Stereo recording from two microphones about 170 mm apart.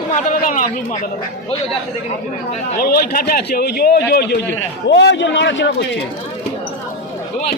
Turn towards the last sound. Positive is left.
turn(degrees=90)